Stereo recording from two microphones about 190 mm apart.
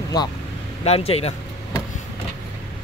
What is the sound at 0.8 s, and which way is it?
Speech, 35° left (ahead or behind).